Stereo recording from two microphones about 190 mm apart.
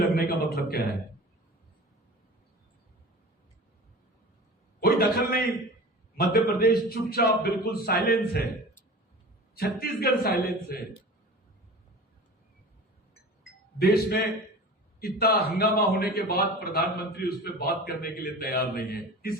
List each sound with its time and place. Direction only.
0.0 s a man's voice: 55° left (ahead or behind)
4.8 s a man's voice: 50° left (ahead or behind)
9.6 s a man's voice: 55° left (ahead or behind)
13.7 s a man's voice: 55° left (ahead or behind)